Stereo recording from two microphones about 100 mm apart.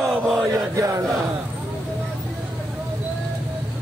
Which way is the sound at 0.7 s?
35° right (ahead or behind).